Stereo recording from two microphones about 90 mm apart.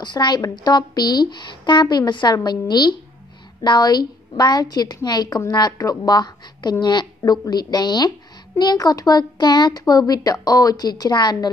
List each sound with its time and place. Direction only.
0.0 s speech: 55° left (ahead or behind)